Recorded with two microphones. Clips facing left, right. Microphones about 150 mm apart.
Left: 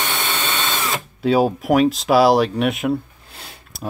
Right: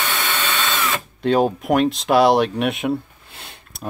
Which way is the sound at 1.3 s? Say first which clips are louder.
Left 1 dB; 5° left (ahead or behind).